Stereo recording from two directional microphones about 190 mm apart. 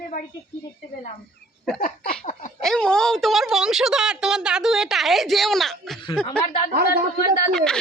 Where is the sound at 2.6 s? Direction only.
5° left (ahead or behind).